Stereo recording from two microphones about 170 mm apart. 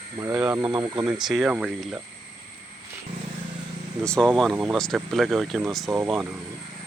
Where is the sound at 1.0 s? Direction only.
5° right (ahead or behind).